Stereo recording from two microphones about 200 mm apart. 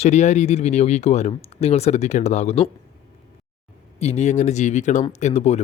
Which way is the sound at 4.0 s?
30° left (ahead or behind).